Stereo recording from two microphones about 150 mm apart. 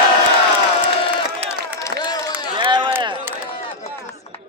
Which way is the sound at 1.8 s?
25° left (ahead or behind).